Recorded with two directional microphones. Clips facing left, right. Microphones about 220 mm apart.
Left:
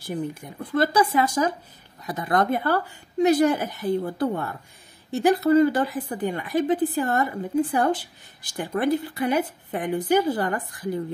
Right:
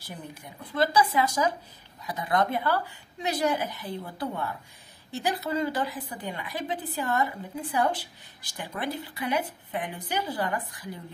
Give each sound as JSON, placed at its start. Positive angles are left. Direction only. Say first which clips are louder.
{"t": 0.0, "sound": "a woman's voice", "louder": "left 12 dB", "side_deg": 50}